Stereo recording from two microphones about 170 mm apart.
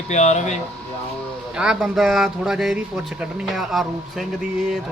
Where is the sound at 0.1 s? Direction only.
45° left (ahead or behind).